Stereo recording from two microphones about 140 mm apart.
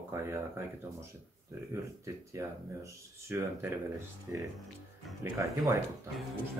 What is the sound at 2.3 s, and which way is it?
Speech, 20° right (ahead or behind).